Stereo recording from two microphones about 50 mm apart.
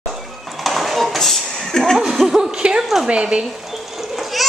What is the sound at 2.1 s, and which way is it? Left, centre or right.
Chuckle, centre.